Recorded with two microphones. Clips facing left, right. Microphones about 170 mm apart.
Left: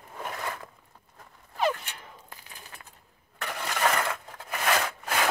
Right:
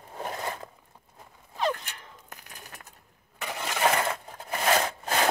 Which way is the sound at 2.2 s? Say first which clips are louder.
Right 1 dB; 45° right (ahead or behind).